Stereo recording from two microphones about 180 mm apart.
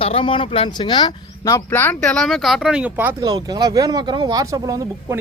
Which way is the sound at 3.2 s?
20° right (ahead or behind).